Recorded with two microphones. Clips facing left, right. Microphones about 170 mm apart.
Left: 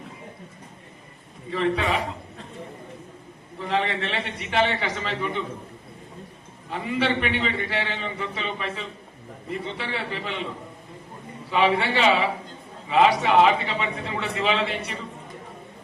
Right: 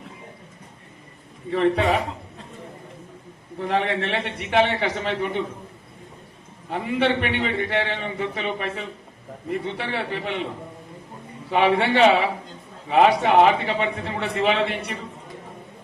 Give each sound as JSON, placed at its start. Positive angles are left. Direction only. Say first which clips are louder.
{"t": 1.5, "sound": "a man's voice", "louder": "right 4 dB", "side_deg": -55}
{"t": 3.6, "sound": "a man's voice", "louder": "right 2 dB", "side_deg": -55}
{"t": 6.7, "sound": "a man's voice", "louder": "right 3 dB", "side_deg": -55}
{"t": 11.5, "sound": "a man's voice", "louder": "right 3 dB", "side_deg": -60}